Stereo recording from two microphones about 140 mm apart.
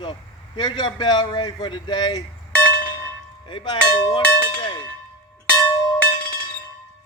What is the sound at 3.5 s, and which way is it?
Speech, 35° left (ahead or behind).